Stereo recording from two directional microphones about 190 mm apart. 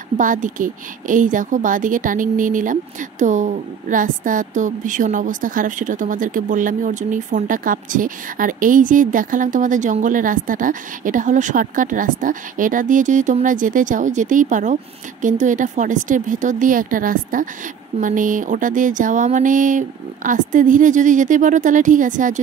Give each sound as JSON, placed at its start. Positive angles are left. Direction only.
{"t": 0.2, "sound": "a woman's voice", "side_deg": -45}